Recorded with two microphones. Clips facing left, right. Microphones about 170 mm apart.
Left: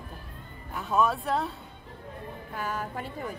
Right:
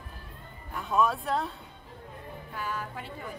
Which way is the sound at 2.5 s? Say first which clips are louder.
Left 3 dB; 45° left (ahead or behind).